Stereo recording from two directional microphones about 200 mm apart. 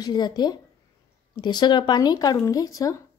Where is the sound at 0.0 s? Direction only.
20° left (ahead or behind).